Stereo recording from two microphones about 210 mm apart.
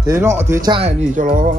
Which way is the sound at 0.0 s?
15° right (ahead or behind).